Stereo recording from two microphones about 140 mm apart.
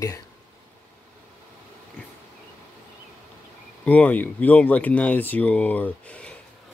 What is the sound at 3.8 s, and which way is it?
Speech, 10° left (ahead or behind).